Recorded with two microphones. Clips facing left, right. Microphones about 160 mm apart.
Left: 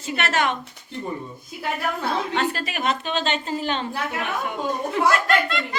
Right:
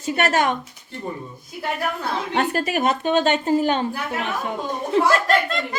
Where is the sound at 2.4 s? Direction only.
45° right (ahead or behind).